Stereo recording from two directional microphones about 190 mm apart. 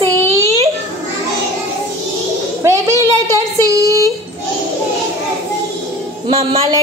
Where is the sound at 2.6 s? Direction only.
15° right (ahead or behind).